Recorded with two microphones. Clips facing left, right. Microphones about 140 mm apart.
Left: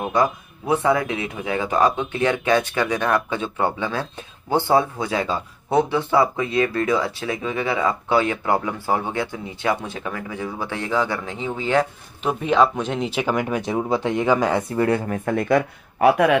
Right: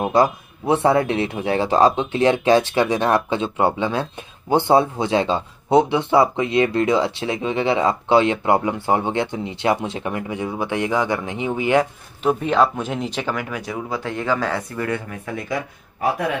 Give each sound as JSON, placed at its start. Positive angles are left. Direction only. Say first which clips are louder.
{"t": 0.0, "sound": "speech", "louder": "right 3 dB", "side_deg": -30}
{"t": 12.3, "sound": "speech", "louder": "right 1 dB", "side_deg": 0}
{"t": 13.2, "sound": "speech", "louder": "left 4 dB", "side_deg": 20}
{"t": 14.8, "sound": "speech", "louder": "left 5 dB", "side_deg": 35}
{"t": 15.2, "sound": "speech", "louder": "left 9 dB", "side_deg": 60}